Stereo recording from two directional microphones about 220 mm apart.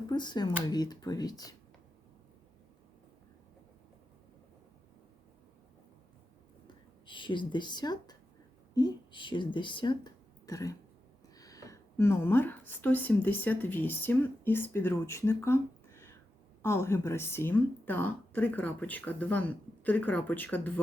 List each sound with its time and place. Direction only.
0.1 s speech: 20° left (ahead or behind)
6.7 s a sound: 20° left (ahead or behind)
8.7 s speech: 20° left (ahead or behind)